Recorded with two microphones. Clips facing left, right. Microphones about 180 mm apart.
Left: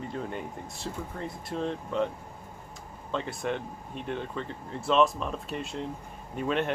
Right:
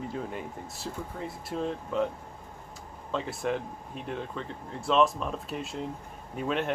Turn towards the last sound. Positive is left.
turn(degrees=0)  # may be behind; listen again after turning